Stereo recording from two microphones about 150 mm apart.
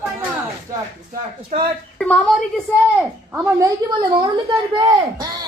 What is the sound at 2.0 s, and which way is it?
Speech, 5° left (ahead or behind).